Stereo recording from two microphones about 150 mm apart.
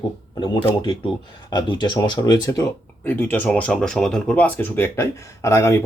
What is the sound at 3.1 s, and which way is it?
Speech, 10° left (ahead or behind).